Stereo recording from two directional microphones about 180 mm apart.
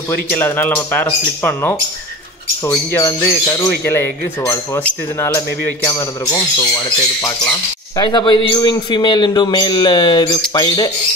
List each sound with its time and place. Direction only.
0.3 s speech: 10° left (ahead or behind)
8.0 s a man's voice: 25° left (ahead or behind)